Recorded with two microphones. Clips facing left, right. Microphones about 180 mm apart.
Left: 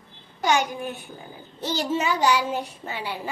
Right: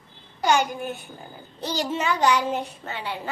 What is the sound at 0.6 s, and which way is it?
A child's voice, centre (ahead or behind).